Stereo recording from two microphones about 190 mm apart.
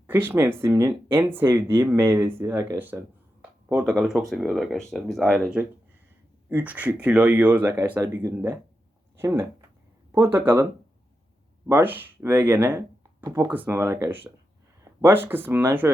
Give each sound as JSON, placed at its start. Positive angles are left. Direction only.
{"t": 0.1, "sound": "speech", "side_deg": -10}
{"t": 11.7, "sound": "speech", "side_deg": -10}